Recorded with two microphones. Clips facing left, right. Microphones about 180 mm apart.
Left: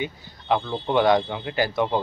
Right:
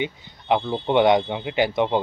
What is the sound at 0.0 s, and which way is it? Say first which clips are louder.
Speech: right 3 dB; 20° right (ahead or behind).